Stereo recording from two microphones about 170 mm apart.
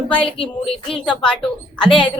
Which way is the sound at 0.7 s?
5° left (ahead or behind).